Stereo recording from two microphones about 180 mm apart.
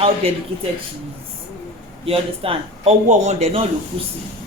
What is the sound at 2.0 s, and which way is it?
A man's voice, 30° right (ahead or behind).